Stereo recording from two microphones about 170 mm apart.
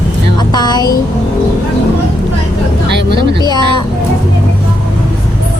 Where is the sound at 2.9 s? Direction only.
90° right.